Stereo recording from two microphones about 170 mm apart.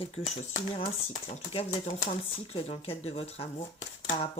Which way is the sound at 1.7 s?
40° left (ahead or behind).